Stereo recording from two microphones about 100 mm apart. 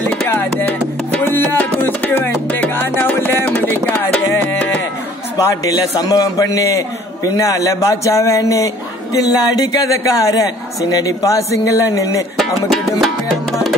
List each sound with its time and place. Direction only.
0.3 s music: 20° left (ahead or behind)
5.5 s speech: 35° left (ahead or behind)
13.0 s music: centre (ahead or behind)